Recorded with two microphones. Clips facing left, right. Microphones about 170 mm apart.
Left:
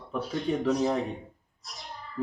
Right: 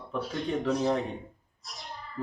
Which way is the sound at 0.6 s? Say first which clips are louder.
Even; 5° left (ahead or behind).